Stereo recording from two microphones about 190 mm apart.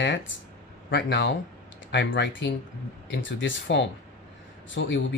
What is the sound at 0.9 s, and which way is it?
Speech, 70° left (ahead or behind).